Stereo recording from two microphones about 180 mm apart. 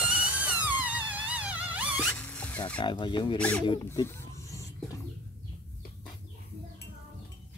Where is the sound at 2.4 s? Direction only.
10° left (ahead or behind).